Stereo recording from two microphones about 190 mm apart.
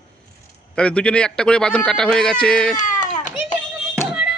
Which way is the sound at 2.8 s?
40° left (ahead or behind).